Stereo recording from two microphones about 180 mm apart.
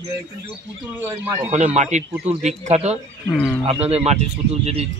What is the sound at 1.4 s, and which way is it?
Speech, 40° right (ahead or behind).